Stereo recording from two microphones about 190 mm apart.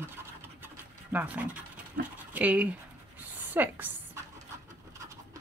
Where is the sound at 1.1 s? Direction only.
10° right (ahead or behind).